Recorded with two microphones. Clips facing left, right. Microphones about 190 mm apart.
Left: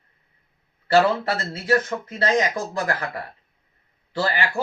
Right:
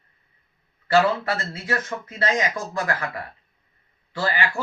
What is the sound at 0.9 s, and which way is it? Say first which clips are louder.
Speech: left 1 dB; 40° left (ahead or behind).